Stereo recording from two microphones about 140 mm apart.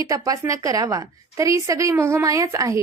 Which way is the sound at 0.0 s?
25° right (ahead or behind).